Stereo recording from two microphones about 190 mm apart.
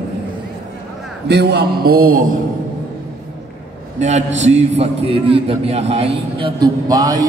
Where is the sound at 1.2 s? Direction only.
60° right (ahead or behind).